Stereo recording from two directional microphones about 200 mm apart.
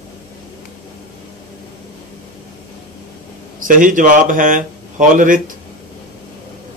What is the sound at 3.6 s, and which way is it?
Speech, 40° right (ahead or behind).